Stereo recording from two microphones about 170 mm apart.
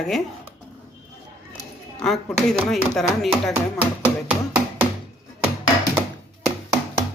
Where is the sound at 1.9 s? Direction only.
5° left (ahead or behind).